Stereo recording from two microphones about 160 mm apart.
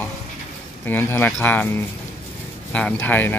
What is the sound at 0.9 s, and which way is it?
Speech, 10° left (ahead or behind).